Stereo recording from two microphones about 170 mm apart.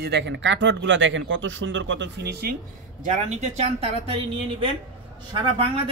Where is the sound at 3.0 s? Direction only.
45° right (ahead or behind).